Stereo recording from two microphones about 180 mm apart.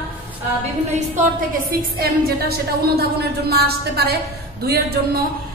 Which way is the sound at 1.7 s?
60° right (ahead or behind).